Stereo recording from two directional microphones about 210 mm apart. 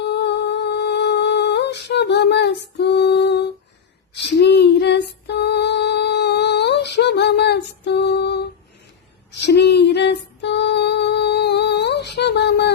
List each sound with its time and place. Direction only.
0.0 s humming: 55° left (ahead or behind)
4.1 s female singing: 55° left (ahead or behind)
9.4 s a sound: 55° left (ahead or behind)